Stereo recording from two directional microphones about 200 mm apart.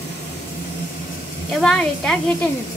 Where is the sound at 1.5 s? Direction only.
5° left (ahead or behind).